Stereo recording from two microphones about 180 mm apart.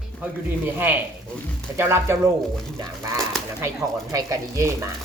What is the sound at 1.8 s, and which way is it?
Speech, 15° right (ahead or behind).